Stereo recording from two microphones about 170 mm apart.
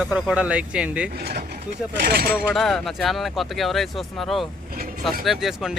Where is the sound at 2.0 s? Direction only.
60° right (ahead or behind).